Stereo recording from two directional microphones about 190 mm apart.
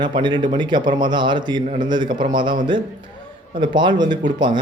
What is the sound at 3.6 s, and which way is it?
Speech, 25° right (ahead or behind).